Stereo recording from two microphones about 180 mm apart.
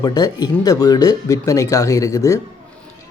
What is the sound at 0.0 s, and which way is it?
Speech, 20° left (ahead or behind).